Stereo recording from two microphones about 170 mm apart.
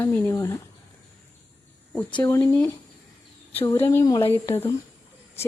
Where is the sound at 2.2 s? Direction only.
15° left (ahead or behind).